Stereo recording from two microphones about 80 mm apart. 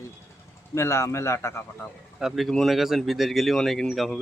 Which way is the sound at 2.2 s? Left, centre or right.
Centre.